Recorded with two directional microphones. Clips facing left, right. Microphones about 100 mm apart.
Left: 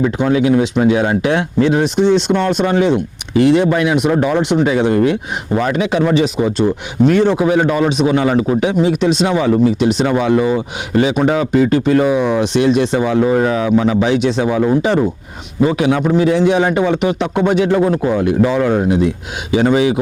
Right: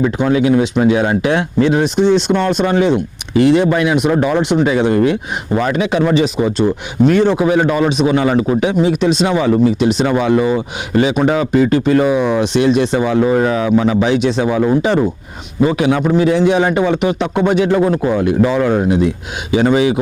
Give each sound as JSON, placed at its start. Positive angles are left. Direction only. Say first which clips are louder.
{"t": 0.0, "sound": "speech", "louder": "even", "side_deg": -15}